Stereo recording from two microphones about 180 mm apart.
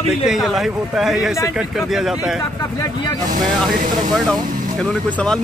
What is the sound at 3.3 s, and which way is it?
Speech, 45° right (ahead or behind).